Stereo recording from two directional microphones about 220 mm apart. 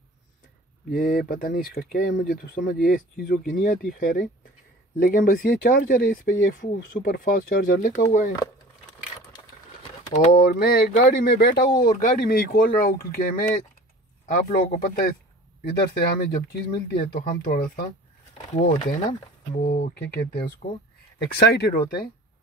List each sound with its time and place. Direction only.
0.8 s speech: 45° left (ahead or behind)
10.2 s speech: 40° left (ahead or behind)